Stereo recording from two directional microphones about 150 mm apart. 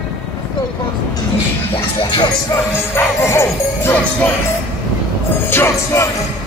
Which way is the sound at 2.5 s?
15° left (ahead or behind).